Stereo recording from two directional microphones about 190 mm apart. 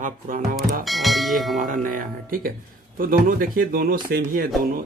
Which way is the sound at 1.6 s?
45° right (ahead or behind).